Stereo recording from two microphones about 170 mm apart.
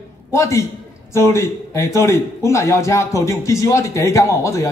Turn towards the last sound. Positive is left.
turn(degrees=20)  # may be behind; listen again after turning